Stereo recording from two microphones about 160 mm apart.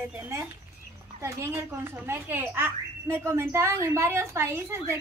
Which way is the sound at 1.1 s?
15° right (ahead or behind).